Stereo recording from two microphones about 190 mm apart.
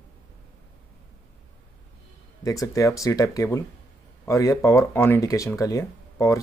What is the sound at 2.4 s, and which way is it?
Speech, 15° left (ahead or behind).